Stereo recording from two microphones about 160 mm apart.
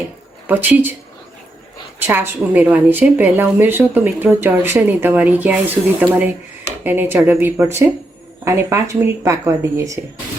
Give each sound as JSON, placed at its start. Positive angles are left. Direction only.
{"t": 0.4, "sound": "a woman's voice", "side_deg": -10}
{"t": 2.0, "sound": "a woman's voice", "side_deg": -15}